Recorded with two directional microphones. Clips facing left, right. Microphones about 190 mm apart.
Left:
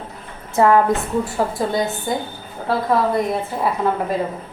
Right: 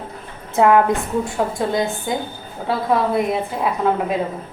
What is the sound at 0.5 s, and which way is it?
A woman's voice, centre (ahead or behind).